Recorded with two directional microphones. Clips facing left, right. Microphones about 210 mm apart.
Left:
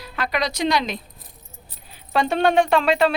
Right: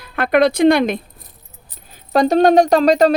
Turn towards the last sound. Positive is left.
turn(degrees=-40)  # may be behind; listen again after turning